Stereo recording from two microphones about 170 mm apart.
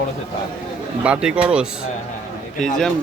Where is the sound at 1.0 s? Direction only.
5° right (ahead or behind).